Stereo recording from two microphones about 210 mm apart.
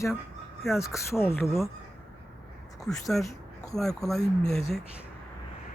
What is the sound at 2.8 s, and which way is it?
Speech, centre (ahead or behind).